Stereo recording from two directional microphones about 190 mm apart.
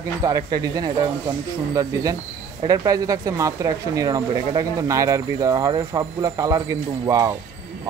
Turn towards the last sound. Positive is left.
turn(degrees=-20)  # may be behind; listen again after turning